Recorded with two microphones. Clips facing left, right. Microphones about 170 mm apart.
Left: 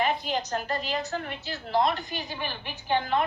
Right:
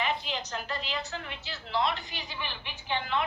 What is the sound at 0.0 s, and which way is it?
A woman's voice, 45° left (ahead or behind).